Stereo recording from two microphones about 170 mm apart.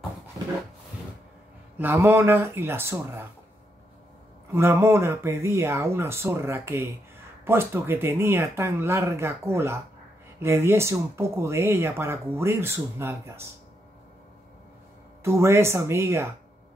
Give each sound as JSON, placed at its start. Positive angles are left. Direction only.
{"t": 1.8, "sound": "speech", "side_deg": -15}
{"t": 4.5, "sound": "speech", "side_deg": -15}
{"t": 15.2, "sound": "speech", "side_deg": -15}